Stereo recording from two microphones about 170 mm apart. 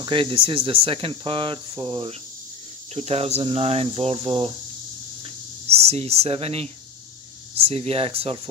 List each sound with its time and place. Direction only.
0.0 s speech: 30° right (ahead or behind)
5.7 s speech: 35° right (ahead or behind)